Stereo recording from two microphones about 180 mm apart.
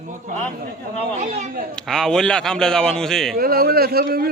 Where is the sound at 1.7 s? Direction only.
Centre (ahead or behind).